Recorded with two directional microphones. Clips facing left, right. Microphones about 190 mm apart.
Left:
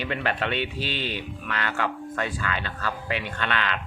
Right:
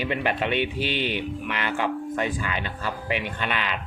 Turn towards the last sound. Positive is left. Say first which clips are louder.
# even
turn(degrees=-10)  # may be behind; listen again after turning